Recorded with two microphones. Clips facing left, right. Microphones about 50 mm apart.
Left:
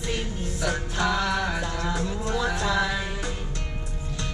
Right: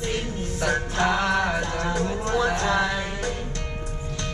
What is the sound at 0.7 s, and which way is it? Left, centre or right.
Music, right.